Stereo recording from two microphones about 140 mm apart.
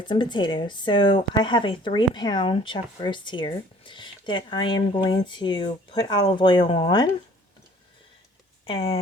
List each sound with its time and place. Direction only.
0.0 s speech: 35° left (ahead or behind)
8.6 s speech: 40° left (ahead or behind)